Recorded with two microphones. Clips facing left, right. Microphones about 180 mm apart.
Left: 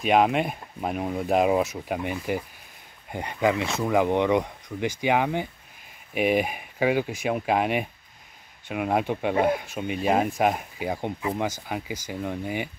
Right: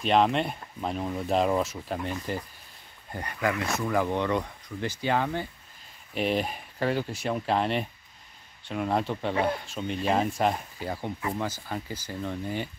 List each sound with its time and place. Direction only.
0.0 s speech: 10° left (ahead or behind)